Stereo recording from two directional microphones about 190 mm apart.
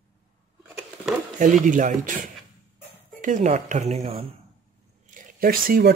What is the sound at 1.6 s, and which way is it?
Speech, 40° right (ahead or behind).